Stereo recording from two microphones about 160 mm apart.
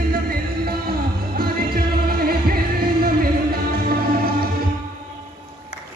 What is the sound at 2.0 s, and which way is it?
Music, 65° right (ahead or behind).